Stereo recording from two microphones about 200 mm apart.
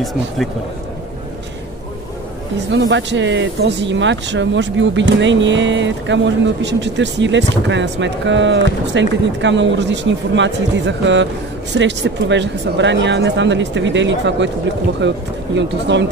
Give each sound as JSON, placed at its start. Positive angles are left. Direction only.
{"t": 2.7, "sound": "speech", "side_deg": -65}